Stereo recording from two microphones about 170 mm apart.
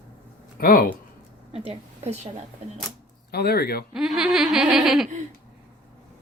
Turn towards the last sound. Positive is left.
turn(degrees=0)  # may be behind; listen again after turning